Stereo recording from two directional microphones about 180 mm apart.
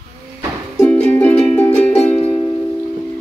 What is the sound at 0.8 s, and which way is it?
Music, 10° left (ahead or behind).